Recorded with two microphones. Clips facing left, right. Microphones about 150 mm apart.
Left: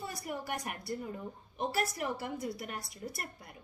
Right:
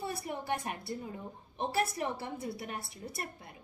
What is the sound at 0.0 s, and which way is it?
A woman's voice, 25° right (ahead or behind).